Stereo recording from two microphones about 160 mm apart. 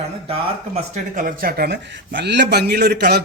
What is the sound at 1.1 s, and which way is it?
A man's voice, 60° right (ahead or behind).